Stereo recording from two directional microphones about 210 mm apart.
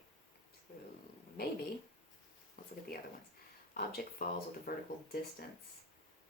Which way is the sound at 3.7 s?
45° left (ahead or behind).